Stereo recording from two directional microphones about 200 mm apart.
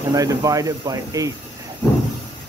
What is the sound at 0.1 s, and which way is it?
Speech, 20° right (ahead or behind).